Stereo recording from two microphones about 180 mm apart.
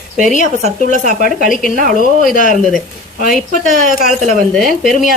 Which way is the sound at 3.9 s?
45° left (ahead or behind).